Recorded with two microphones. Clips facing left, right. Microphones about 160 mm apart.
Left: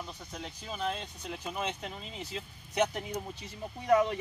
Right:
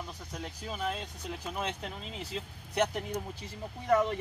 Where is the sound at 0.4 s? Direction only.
5° right (ahead or behind).